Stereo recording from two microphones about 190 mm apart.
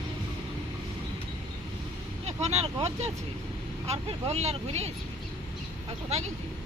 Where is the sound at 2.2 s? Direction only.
35° right (ahead or behind).